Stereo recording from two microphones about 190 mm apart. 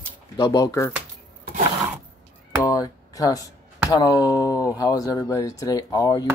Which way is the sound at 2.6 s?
20° left (ahead or behind).